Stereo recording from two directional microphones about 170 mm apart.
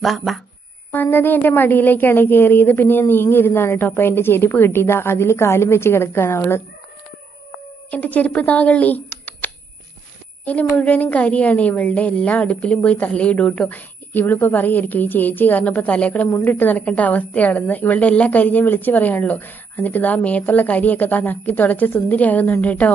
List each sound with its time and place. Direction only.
0.0 s speech: centre (ahead or behind)
0.9 s a woman's voice: 10° left (ahead or behind)
7.9 s a woman's voice: 10° left (ahead or behind)